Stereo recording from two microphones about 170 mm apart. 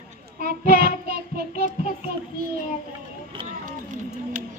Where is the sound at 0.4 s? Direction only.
65° right (ahead or behind).